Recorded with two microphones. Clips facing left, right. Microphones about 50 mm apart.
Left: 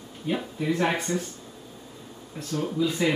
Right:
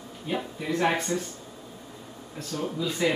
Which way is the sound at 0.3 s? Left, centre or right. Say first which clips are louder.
Left 2 dB; centre.